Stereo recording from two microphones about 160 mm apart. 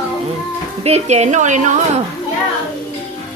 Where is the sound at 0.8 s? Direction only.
45° right (ahead or behind).